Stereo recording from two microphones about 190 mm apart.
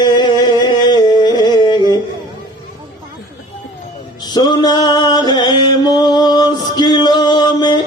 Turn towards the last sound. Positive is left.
turn(degrees=20)  # may be behind; listen again after turning